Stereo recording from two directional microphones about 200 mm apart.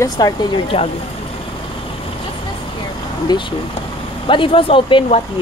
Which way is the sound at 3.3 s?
20° left (ahead or behind).